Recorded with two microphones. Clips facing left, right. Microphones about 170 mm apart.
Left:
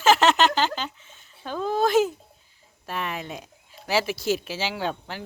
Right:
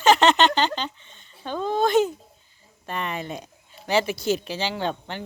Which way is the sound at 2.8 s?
5° left (ahead or behind).